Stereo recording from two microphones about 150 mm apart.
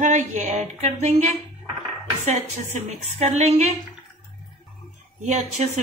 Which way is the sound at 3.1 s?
45° right (ahead or behind).